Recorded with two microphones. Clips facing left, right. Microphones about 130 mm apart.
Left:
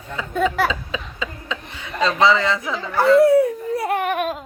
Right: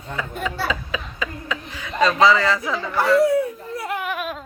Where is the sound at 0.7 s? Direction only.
25° left (ahead or behind).